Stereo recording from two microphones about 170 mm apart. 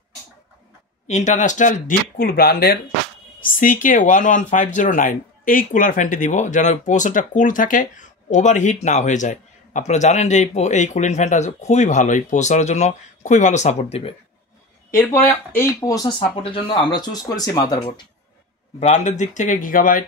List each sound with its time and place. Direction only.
1.0 s speech: 45° left (ahead or behind); by 2.8 s 65° left (ahead or behind)
3.5 s speech: 50° left (ahead or behind)
14.9 s speech: 15° left (ahead or behind)
18.8 s speech: 40° left (ahead or behind)